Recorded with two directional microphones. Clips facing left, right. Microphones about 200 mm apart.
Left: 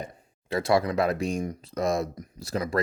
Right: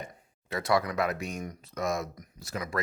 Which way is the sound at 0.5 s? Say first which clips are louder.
Left 4 dB; 25° left (ahead or behind).